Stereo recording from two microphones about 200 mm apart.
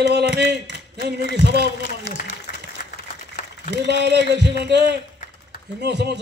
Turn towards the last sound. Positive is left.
turn(degrees=-55)  # may be behind; listen again after turning